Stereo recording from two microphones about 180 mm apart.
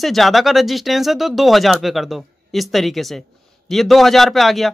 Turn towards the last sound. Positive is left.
turn(degrees=0)  # may be behind; listen again after turning